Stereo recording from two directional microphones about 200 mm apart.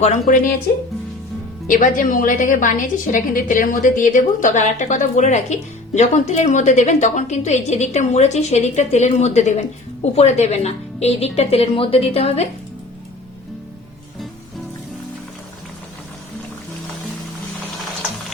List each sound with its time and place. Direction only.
0.3 s speech: 45° left (ahead or behind)
1.7 s a woman's voice: 40° left (ahead or behind)